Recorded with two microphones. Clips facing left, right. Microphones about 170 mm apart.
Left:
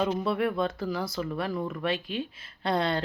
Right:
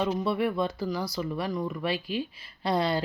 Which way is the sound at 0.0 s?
Centre (ahead or behind).